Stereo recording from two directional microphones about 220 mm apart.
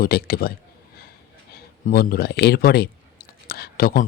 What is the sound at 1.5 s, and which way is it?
Speech, 40° left (ahead or behind).